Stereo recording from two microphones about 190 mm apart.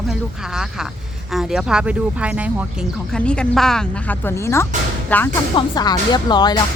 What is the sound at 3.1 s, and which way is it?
Speech, 5° left (ahead or behind).